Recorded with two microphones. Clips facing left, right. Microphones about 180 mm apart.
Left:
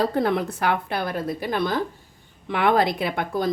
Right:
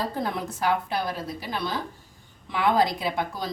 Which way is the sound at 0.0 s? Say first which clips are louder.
Left 7 dB; 65° left (ahead or behind).